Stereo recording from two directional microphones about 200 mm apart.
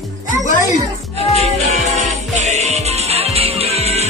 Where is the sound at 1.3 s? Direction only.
35° right (ahead or behind).